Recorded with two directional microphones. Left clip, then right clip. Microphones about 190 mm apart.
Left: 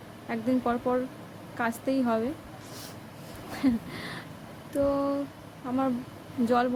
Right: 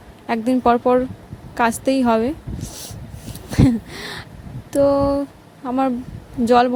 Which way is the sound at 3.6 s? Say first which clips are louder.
Right 10 dB; 40° right (ahead or behind).